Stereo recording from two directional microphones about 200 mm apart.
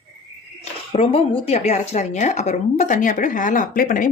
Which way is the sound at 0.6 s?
30° left (ahead or behind).